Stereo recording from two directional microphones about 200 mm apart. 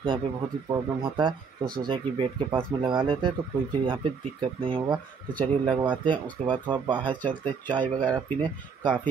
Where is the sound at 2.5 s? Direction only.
25° right (ahead or behind).